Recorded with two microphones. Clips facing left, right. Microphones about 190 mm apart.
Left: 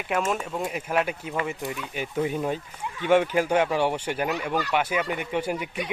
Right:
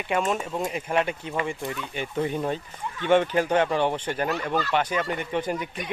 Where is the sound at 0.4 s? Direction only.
Centre (ahead or behind).